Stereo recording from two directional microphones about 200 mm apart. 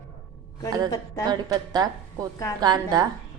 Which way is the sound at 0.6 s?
20° right (ahead or behind).